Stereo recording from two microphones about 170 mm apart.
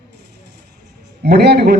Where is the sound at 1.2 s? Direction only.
75° right (ahead or behind).